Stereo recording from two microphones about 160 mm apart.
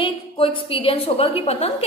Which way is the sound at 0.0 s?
35° left (ahead or behind).